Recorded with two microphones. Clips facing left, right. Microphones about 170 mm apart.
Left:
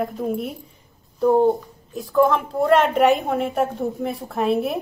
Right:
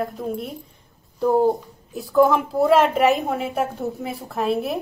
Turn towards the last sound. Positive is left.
turn(degrees=0)  # may be behind; listen again after turning